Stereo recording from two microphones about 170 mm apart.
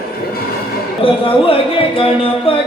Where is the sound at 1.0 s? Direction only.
30° left (ahead or behind).